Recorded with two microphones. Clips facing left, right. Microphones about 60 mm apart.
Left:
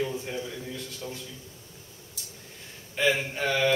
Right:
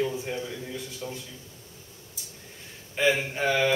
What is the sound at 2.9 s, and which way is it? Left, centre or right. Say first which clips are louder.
Speech: right 1 dB; centre.